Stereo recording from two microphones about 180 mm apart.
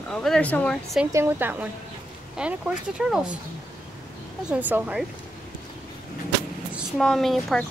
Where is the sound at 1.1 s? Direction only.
15° right (ahead or behind).